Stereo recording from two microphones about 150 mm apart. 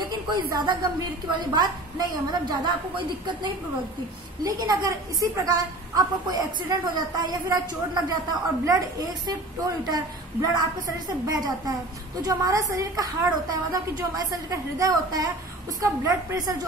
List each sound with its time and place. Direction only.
0.0 s a sound: 30° right (ahead or behind)
1.5 s a woman's voice: 25° right (ahead or behind)
4.4 s a woman's voice: 25° right (ahead or behind)